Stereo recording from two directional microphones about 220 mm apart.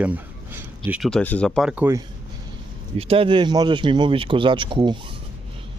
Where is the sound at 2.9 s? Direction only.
25° right (ahead or behind).